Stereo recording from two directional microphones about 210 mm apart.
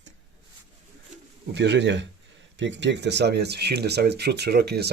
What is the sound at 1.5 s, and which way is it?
Speech, 55° right (ahead or behind).